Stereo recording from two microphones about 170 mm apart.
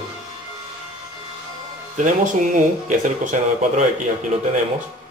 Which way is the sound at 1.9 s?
50° right (ahead or behind).